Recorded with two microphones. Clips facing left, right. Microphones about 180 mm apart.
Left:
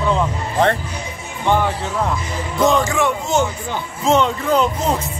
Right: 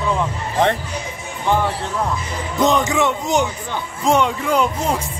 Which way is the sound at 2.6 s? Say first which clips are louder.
Left 1 dB; 20° right (ahead or behind).